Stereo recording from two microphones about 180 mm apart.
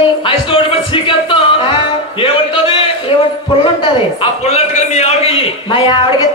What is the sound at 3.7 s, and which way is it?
A man's voice, 30° left (ahead or behind).